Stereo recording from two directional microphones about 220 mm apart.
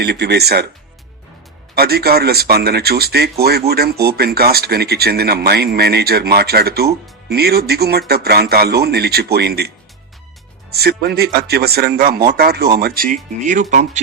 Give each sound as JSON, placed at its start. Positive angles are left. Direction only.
{"t": 0.0, "sound": "speech", "side_deg": -50}
{"t": 1.7, "sound": "speech", "side_deg": -45}